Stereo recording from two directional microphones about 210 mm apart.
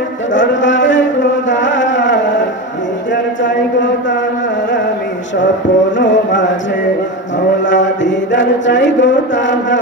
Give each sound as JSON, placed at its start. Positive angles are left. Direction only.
{"t": 0.3, "sound": "a sound", "side_deg": 60}
{"t": 1.5, "sound": "music", "side_deg": 60}
{"t": 5.9, "sound": "music", "side_deg": 60}
{"t": 7.6, "sound": "mantra", "side_deg": 60}